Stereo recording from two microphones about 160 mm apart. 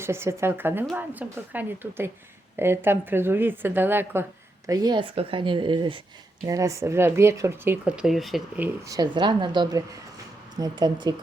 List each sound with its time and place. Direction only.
0.0 s a woman's voice: 15° right (ahead or behind); by 8.4 s centre (ahead or behind)
8.5 s speech: 10° right (ahead or behind)
8.9 s a woman's voice: 25° right (ahead or behind)